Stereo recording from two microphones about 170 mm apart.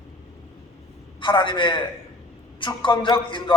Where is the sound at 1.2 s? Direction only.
30° left (ahead or behind).